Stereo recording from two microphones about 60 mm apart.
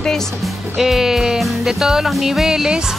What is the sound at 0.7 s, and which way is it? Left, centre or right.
Music, centre.